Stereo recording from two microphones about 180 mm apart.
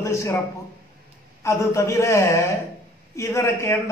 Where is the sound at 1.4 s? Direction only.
15° left (ahead or behind).